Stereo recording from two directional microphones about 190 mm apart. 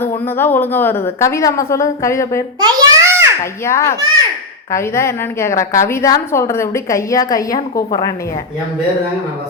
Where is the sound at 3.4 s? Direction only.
15° left (ahead or behind).